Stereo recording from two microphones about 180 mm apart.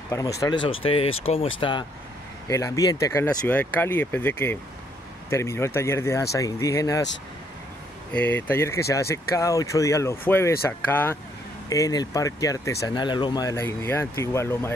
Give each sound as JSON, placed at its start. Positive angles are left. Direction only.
{"t": 0.4, "sound": "speech", "side_deg": 25}
{"t": 8.1, "sound": "speech", "side_deg": 10}